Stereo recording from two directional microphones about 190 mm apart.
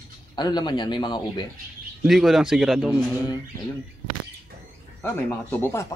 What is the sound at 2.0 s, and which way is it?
Speech, centre (ahead or behind).